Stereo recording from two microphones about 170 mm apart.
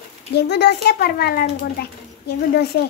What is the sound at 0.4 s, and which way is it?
A child's voice, 75° left (ahead or behind).